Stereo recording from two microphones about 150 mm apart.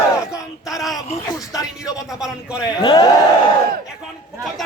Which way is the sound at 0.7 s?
Centre (ahead or behind).